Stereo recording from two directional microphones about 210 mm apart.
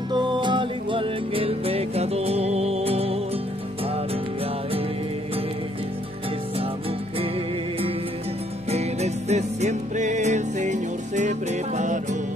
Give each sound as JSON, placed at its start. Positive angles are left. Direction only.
{"t": 0.1, "sound": "music", "side_deg": -20}
{"t": 8.6, "sound": "music", "side_deg": -30}